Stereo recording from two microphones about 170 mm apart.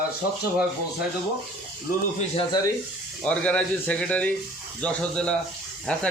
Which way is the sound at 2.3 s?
25° left (ahead or behind).